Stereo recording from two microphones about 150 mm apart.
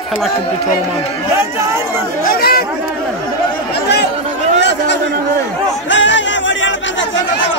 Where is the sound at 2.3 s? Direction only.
90° left.